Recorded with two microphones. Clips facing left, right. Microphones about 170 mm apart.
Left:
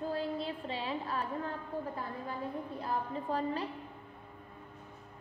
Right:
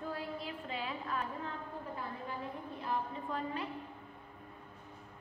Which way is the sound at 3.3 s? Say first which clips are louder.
Left 5 dB; 35° left (ahead or behind).